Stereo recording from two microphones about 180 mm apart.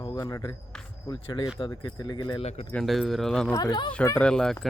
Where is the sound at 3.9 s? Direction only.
10° left (ahead or behind).